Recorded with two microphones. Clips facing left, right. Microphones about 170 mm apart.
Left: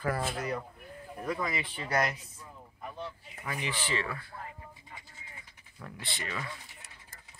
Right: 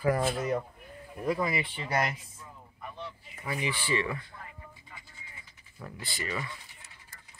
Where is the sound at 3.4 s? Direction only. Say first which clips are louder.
Right 3 dB; 10° right (ahead or behind).